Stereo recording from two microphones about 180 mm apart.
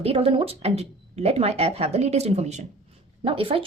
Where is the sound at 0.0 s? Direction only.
30° right (ahead or behind).